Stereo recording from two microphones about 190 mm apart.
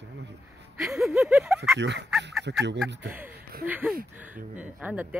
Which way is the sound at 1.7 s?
65° right (ahead or behind).